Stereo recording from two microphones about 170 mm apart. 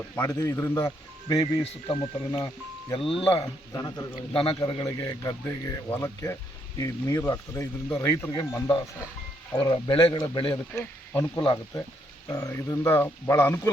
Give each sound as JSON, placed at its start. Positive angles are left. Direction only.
{"t": 0.2, "sound": "a man's voice", "side_deg": 15}
{"t": 2.9, "sound": "speech", "side_deg": 30}
{"t": 3.7, "sound": "a man's voice", "side_deg": 20}
{"t": 10.8, "sound": "a man's voice", "side_deg": 15}